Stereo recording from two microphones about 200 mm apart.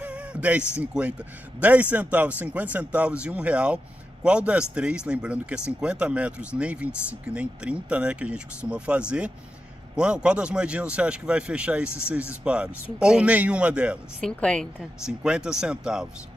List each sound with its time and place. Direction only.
0.0 s speech: 5° right (ahead or behind)